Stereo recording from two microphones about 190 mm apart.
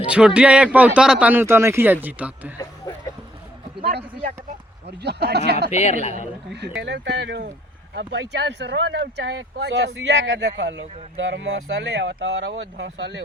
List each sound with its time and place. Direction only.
0.0 s speech: 5° right (ahead or behind)
3.8 s a sound: 55° right (ahead or behind)
4.9 s speech: 60° right (ahead or behind)
5.7 s a man's voice: 35° left (ahead or behind)
6.5 s speech: 65° right (ahead or behind)